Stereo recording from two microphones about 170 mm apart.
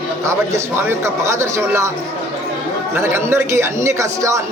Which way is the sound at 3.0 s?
15° right (ahead or behind).